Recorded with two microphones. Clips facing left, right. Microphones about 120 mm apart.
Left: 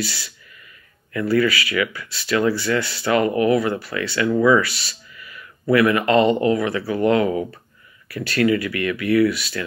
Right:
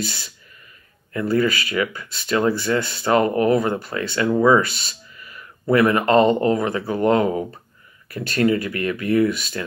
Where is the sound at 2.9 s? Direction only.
25° right (ahead or behind).